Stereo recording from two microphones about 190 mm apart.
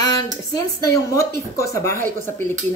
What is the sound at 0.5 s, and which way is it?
A woman's voice, 15° left (ahead or behind).